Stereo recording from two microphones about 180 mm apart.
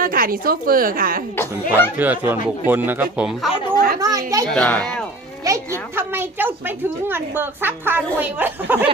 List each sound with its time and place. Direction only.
0.0 s a woman's voice: 50° right (ahead or behind)
2.0 s a woman's voice: 10° right (ahead or behind)
4.0 s a sound: 20° right (ahead or behind)
4.5 s a child's voice: 5° left (ahead or behind)
5.5 s a woman's voice: 20° right (ahead or behind)